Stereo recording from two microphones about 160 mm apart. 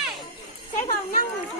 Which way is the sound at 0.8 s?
50° left (ahead or behind).